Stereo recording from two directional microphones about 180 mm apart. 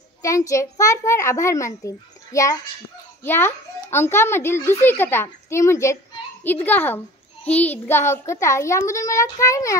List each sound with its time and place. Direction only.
0.2 s a child's voice: 15° left (ahead or behind)